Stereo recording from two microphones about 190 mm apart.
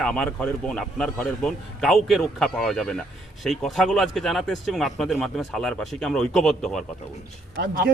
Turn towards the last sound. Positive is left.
turn(degrees=-50)  # may be behind; listen again after turning